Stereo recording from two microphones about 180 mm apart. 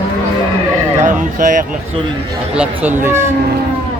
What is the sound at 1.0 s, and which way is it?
Speech, 45° right (ahead or behind).